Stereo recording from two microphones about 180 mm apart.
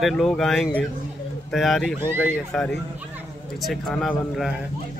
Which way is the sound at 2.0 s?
10° right (ahead or behind).